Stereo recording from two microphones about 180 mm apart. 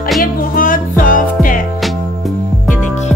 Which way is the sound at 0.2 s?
50° left (ahead or behind).